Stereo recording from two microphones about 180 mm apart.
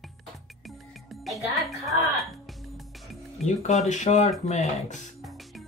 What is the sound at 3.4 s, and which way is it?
Speech, 40° left (ahead or behind).